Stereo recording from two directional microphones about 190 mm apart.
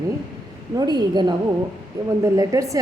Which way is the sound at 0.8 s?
20° right (ahead or behind).